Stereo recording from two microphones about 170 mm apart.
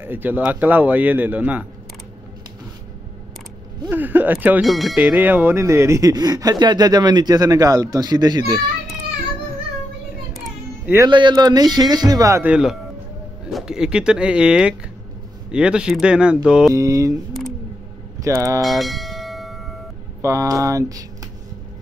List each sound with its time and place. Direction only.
0.0 s speech: 10° right (ahead or behind)
3.9 s speech: 10° right (ahead or behind)
11.1 s speech: 25° right (ahead or behind); by 16.7 s 5° right (ahead or behind)
16.7 s speech: 20° right (ahead or behind)
18.2 s speech: 20° right (ahead or behind)
18.6 s bell: centre (ahead or behind)
20.2 s speech: 20° right (ahead or behind)